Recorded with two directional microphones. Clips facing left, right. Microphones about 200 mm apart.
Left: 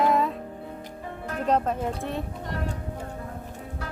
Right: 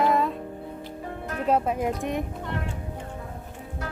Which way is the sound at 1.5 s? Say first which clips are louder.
Right 1 dB; 10° right (ahead or behind).